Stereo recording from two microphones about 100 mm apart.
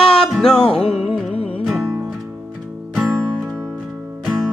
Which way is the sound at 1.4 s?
70° left (ahead or behind).